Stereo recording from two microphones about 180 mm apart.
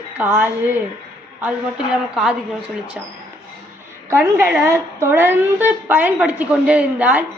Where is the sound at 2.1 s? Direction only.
5° right (ahead or behind).